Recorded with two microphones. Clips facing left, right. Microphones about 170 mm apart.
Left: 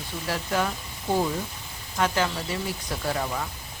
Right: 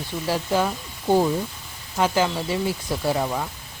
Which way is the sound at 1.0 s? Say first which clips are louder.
Right 6 dB; 30° right (ahead or behind).